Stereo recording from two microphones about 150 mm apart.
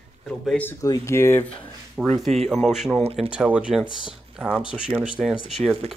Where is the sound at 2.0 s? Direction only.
5° right (ahead or behind).